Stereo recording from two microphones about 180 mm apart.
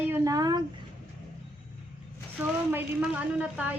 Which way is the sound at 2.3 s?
10° right (ahead or behind).